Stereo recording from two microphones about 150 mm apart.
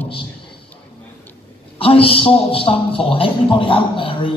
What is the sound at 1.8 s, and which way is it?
A man's voice, 40° left (ahead or behind).